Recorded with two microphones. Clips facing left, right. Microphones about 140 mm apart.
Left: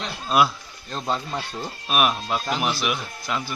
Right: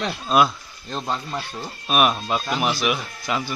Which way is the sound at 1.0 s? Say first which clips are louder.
Left 2 dB; 15° left (ahead or behind).